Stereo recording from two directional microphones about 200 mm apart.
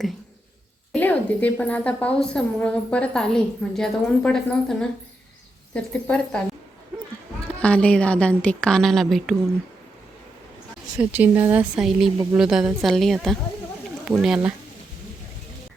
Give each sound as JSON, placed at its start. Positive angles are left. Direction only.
{"t": 0.9, "sound": "a woman's voice", "side_deg": 10}
{"t": 7.6, "sound": "a woman's voice", "side_deg": 5}
{"t": 10.9, "sound": "speech", "side_deg": -10}
{"t": 12.1, "sound": "speech", "side_deg": -15}
{"t": 12.4, "sound": "a woman's voice", "side_deg": 0}